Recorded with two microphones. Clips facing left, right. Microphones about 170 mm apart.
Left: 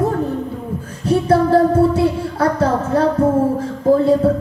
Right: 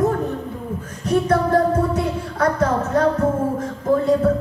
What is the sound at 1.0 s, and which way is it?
Speech, 30° left (ahead or behind).